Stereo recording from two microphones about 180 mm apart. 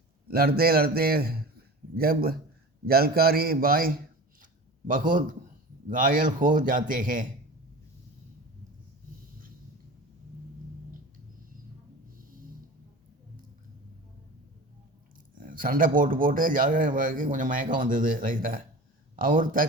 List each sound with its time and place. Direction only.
0.3 s a man's voice: 60° right (ahead or behind)
15.4 s a man's voice: 50° right (ahead or behind)